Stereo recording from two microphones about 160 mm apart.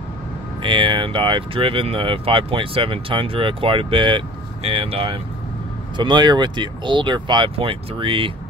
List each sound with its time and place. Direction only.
0.6 s speech: 30° right (ahead or behind)